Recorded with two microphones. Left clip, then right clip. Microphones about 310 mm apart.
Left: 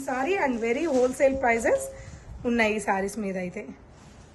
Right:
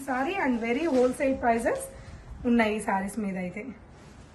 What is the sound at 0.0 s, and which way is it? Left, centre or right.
A woman's voice, centre.